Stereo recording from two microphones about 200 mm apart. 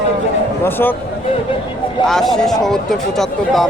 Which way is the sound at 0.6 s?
10° left (ahead or behind).